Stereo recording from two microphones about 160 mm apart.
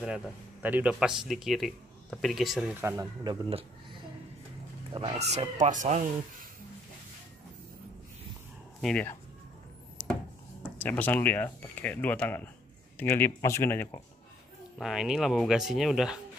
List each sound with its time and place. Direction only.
0.0 s speech: 10° right (ahead or behind)
2.8 s speech: 15° right (ahead or behind)
4.9 s speech: 35° right (ahead or behind)
8.8 s speech: 10° left (ahead or behind)
10.6 s speech: 10° left (ahead or behind)
14.8 s speech: centre (ahead or behind)